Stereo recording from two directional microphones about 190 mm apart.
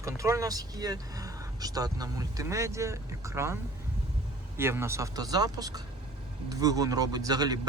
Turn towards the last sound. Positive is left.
turn(degrees=-20)  # may be behind; listen again after turning